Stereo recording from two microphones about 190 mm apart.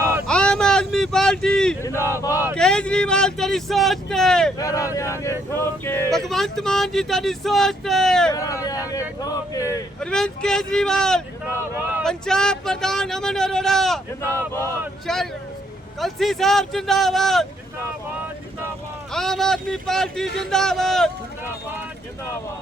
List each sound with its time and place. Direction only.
0.3 s a sound: 5° left (ahead or behind)
1.8 s speech: 15° left (ahead or behind)
2.6 s speech: 5° left (ahead or behind)
4.5 s speech: 15° left (ahead or behind)
6.1 s speech: centre (ahead or behind)
8.3 s speech: 15° left (ahead or behind)
10.0 s speech: 5° left (ahead or behind)
15.0 s speech: centre (ahead or behind)
19.1 s speech: centre (ahead or behind)